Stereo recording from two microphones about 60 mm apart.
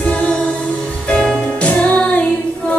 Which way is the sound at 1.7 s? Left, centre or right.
Left.